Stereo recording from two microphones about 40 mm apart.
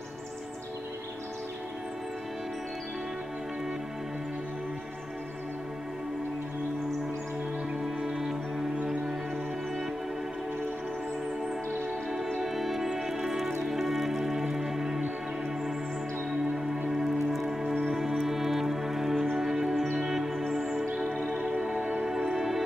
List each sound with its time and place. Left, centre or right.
8.0 s music: centre
12.4 s music: centre
16.3 s music: centre
21.5 s music: right
22.0 s music: centre